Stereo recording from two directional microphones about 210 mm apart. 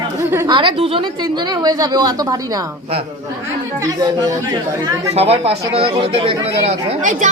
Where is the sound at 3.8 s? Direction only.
15° right (ahead or behind).